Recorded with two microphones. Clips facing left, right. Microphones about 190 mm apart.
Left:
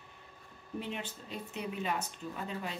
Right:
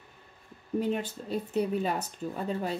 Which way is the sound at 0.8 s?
40° right (ahead or behind).